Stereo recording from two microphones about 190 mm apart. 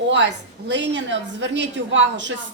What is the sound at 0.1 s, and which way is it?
A woman's voice, 65° right (ahead or behind).